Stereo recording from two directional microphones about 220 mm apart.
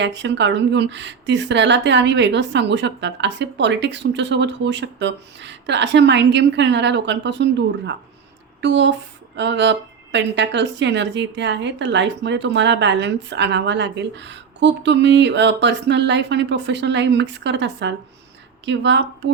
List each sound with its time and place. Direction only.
0.0 s a woman's voice: 55° right (ahead or behind)